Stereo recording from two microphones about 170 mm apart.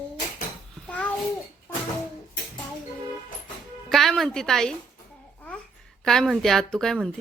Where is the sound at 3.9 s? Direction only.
Centre (ahead or behind).